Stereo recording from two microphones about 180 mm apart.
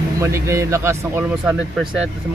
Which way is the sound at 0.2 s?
15° right (ahead or behind).